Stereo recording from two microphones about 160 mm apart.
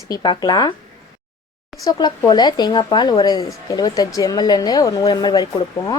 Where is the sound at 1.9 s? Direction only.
25° left (ahead or behind).